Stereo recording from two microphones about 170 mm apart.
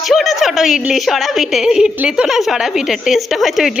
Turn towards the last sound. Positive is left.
turn(degrees=0)  # may be behind; listen again after turning